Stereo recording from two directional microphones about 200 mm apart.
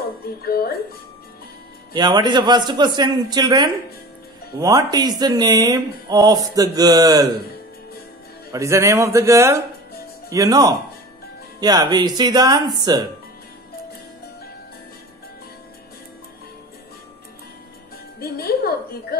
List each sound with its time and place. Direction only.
0.4 s speech: 50° left (ahead or behind)
2.0 s speech: 20° right (ahead or behind)
8.5 s a man's voice: 15° right (ahead or behind)
18.2 s a sound: 50° left (ahead or behind)